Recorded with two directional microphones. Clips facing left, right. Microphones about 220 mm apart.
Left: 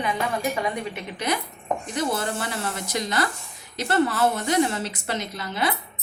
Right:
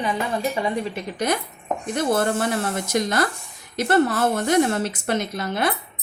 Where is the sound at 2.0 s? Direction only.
50° right (ahead or behind).